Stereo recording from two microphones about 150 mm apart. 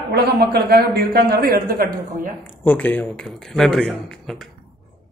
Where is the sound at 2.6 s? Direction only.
10° left (ahead or behind).